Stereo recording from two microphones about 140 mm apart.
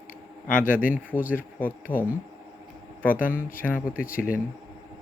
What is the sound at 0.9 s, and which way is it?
Speech, 10° right (ahead or behind).